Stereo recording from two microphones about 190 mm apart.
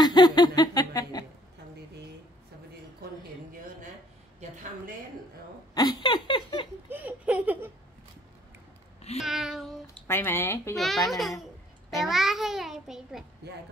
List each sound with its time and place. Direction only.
0.0 s a sound: 20° left (ahead or behind)
5.8 s speech: 25° left (ahead or behind)
6.9 s laughter: 10° right (ahead or behind)
9.2 s a child's voice: centre (ahead or behind)
10.0 s speech: 10° left (ahead or behind)
10.8 s a child's voice: centre (ahead or behind)
13.4 s speech: 60° right (ahead or behind)